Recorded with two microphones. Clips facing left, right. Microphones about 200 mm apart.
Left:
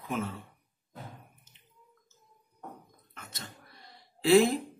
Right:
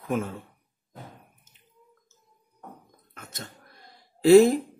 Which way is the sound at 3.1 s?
45° right (ahead or behind).